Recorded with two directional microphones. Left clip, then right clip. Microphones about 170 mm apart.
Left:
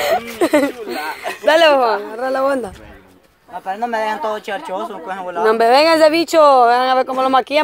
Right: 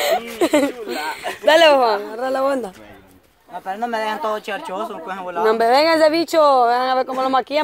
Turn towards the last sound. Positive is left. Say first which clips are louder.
# left 4 dB
turn(degrees=10)  # may be behind; listen again after turning